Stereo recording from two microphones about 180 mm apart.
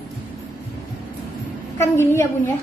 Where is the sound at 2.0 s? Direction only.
15° left (ahead or behind).